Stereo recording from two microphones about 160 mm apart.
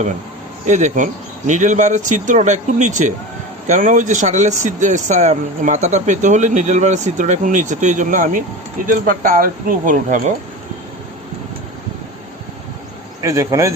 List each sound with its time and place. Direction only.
0.6 s speech: 50° right (ahead or behind)
13.2 s speech: 20° right (ahead or behind)